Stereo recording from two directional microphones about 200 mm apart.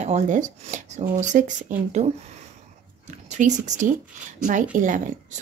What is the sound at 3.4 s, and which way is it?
Speech, 35° right (ahead or behind).